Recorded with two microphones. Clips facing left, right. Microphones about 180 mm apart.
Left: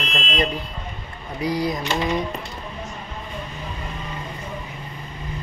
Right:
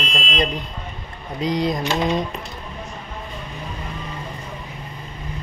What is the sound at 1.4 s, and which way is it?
Speech, 20° right (ahead or behind).